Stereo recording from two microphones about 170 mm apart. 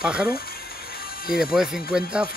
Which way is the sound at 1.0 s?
60° left (ahead or behind).